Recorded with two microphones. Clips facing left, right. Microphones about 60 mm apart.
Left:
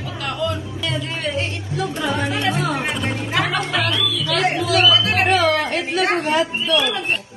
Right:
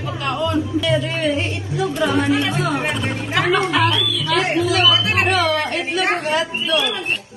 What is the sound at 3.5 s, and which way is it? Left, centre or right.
Speech, centre.